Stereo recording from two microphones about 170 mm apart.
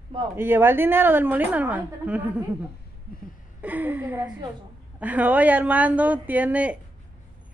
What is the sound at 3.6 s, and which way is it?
A woman's voice, 10° right (ahead or behind).